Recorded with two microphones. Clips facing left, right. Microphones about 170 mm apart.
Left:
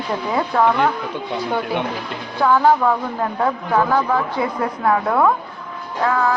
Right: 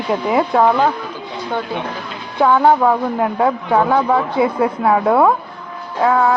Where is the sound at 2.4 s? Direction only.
20° right (ahead or behind).